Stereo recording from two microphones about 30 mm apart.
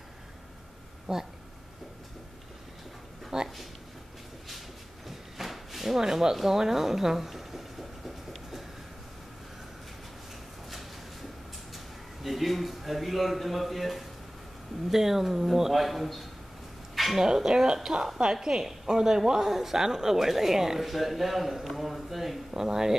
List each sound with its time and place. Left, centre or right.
1.1 s a woman's voice: right
3.3 s speech: centre
4.5 s a sound: centre
5.9 s a woman's voice: centre
8.3 s a sound: centre
11.7 s a man's voice: centre
14.9 s speech: centre
16.9 s a sound: centre
17.2 s a woman's voice: centre
22.5 s a woman's voice: centre